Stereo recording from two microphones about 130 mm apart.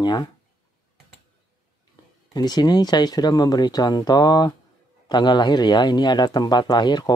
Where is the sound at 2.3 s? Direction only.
30° left (ahead or behind).